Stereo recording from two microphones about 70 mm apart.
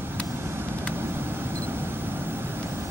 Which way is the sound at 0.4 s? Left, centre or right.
Right.